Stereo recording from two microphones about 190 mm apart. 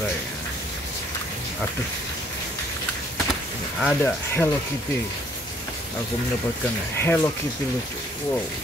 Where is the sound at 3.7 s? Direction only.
5° left (ahead or behind).